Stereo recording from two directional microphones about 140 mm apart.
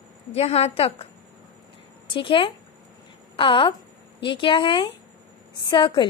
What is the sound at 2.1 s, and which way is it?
A woman's voice, 35° left (ahead or behind).